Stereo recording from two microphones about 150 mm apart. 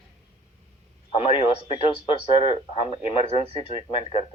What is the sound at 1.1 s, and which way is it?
Speech, 40° left (ahead or behind).